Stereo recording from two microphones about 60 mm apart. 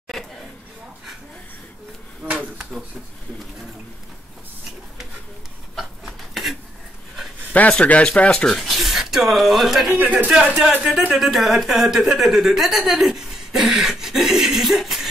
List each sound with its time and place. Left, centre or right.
0.1 s a sound: centre
5.8 s a sound: centre
7.7 s speech: centre
8.5 s a woman's voice: centre
10.0 s speech: centre
11.1 s a woman's voice: centre